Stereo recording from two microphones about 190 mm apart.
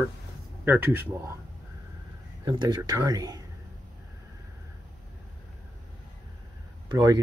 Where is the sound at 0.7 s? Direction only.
10° right (ahead or behind).